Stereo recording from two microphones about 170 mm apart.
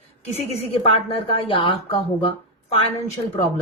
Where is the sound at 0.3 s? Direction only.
35° left (ahead or behind).